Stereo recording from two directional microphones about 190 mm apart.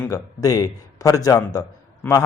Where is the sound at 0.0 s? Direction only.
15° left (ahead or behind).